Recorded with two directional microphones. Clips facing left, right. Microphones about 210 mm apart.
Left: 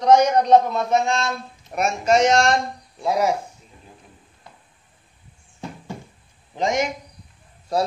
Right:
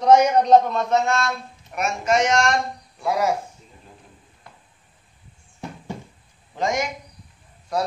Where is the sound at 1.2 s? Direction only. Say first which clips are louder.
Left 1 dB; 30° left (ahead or behind).